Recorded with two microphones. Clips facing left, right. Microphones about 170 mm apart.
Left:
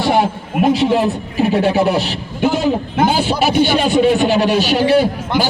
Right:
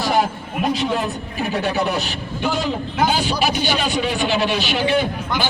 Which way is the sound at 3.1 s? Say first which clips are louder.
Left 5 dB; 55° left (ahead or behind).